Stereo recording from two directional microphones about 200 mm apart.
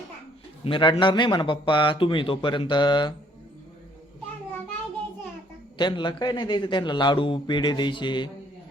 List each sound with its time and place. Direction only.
0.6 s a man's voice: 25° left (ahead or behind)
5.7 s a man's voice: 20° left (ahead or behind)